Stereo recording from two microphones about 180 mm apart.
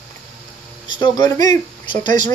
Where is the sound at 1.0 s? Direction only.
20° left (ahead or behind).